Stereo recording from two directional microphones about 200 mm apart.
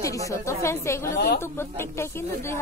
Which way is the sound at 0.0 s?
15° left (ahead or behind).